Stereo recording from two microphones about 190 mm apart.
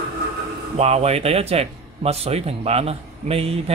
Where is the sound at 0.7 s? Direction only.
35° right (ahead or behind).